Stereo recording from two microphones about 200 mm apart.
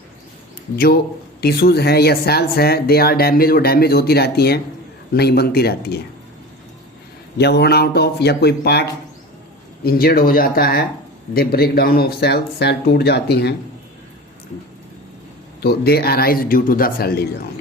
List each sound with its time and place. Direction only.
1.4 s speech: 50° left (ahead or behind)
7.3 s speech: 55° left (ahead or behind)
15.6 s speech: 50° left (ahead or behind)